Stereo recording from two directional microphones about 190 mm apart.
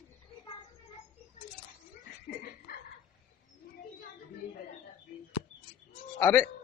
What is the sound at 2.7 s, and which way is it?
Bow-wow, 55° left (ahead or behind).